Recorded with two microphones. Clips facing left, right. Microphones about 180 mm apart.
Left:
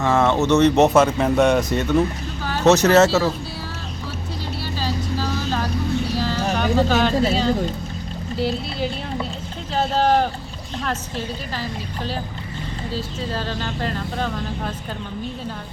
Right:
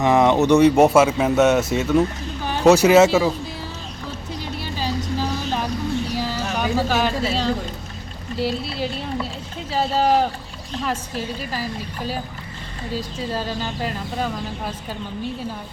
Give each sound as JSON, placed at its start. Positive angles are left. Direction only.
{"t": 0.0, "sound": "speech", "side_deg": -15}
{"t": 4.6, "sound": "vehicle", "side_deg": -15}
{"t": 6.1, "sound": "a sound", "side_deg": -10}
{"t": 8.4, "sound": "speech", "side_deg": 0}
{"t": 12.9, "sound": "speech", "side_deg": -10}